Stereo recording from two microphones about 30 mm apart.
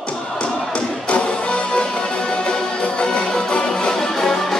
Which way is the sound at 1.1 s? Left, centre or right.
Left.